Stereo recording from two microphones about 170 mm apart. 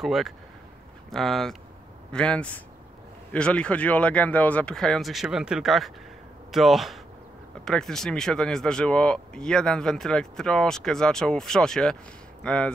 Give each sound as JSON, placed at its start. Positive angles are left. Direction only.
{"t": 0.0, "sound": "speech", "side_deg": 0}